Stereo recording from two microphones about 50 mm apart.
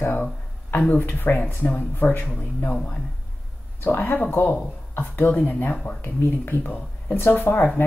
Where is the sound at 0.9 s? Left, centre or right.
Left.